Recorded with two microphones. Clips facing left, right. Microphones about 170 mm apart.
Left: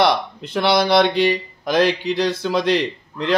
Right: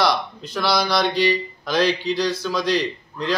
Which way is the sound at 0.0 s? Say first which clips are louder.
Left 3 dB; 55° left (ahead or behind).